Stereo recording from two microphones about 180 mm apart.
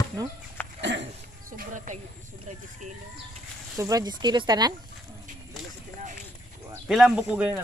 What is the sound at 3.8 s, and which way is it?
Speech, 20° right (ahead or behind).